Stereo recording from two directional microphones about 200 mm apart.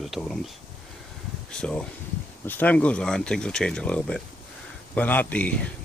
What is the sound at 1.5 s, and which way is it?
Speech, 5° left (ahead or behind).